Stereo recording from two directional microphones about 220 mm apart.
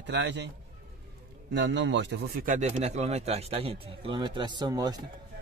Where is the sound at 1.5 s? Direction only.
55° right (ahead or behind).